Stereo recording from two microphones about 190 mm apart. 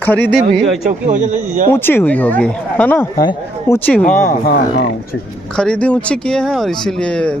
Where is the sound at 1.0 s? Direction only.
40° right (ahead or behind).